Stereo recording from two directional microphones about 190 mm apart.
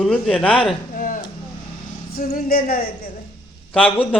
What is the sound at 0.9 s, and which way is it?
Speech, 45° left (ahead or behind).